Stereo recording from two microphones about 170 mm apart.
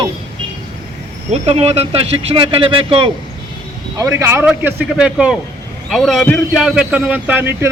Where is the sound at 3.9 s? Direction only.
15° right (ahead or behind).